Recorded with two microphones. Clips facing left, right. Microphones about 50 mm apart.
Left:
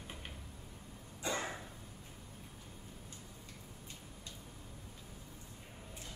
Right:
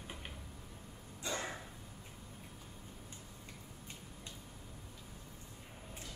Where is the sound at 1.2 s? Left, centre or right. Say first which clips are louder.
Left 2 dB; left.